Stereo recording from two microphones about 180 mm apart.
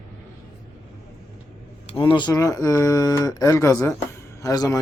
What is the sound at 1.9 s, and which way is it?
Speech, 25° left (ahead or behind).